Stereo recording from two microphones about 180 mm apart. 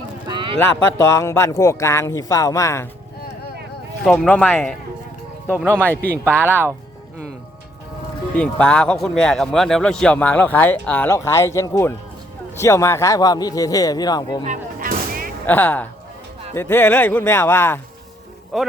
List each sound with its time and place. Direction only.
0.3 s clip-clop: 25° right (ahead or behind)
0.6 s speech: 15° left (ahead or behind)
4.0 s speech: centre (ahead or behind)
5.5 s speech: 10° right (ahead or behind)
5.7 s speech: 10° left (ahead or behind)
6.2 s speech: 10° right (ahead or behind)
8.4 s a man's voice: 5° left (ahead or behind); by 14.4 s 20° left (ahead or behind)
14.4 s artillery fire: 45° right (ahead or behind)
15.4 s speech: 10° left (ahead or behind)
18.5 s speech: centre (ahead or behind)